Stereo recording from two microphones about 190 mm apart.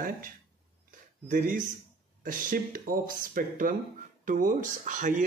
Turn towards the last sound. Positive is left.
turn(degrees=-40)  # may be behind; listen again after turning